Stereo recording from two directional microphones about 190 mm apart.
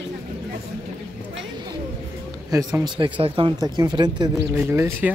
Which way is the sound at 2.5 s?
20° right (ahead or behind).